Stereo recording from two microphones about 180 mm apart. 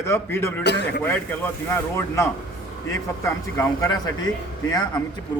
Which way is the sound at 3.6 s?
20° left (ahead or behind).